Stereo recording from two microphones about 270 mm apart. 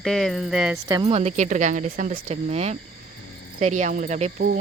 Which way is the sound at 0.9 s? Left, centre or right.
Centre.